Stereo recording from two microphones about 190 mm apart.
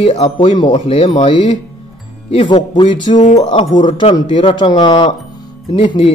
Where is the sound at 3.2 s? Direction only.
40° left (ahead or behind).